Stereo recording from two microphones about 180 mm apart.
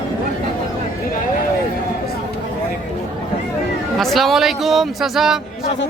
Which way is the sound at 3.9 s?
Centre (ahead or behind).